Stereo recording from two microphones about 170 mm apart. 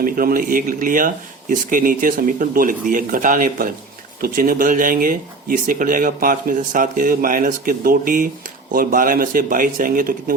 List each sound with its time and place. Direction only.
0.0 s speech: 60° right (ahead or behind)